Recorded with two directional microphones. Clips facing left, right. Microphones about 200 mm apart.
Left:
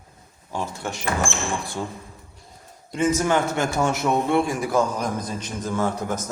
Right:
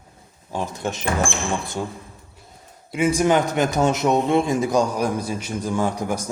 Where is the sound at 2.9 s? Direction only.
10° right (ahead or behind).